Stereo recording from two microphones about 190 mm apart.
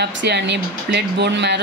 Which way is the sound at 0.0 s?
65° right (ahead or behind).